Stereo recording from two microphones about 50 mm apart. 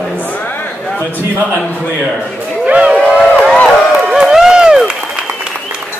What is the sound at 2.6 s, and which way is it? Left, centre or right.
Speech, right.